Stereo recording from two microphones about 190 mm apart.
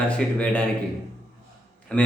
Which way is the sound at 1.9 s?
5° left (ahead or behind).